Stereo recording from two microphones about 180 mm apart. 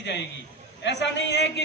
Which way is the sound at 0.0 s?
75° left (ahead or behind).